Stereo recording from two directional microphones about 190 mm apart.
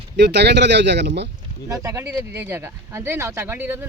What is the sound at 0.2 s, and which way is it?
Speech, 60° right (ahead or behind).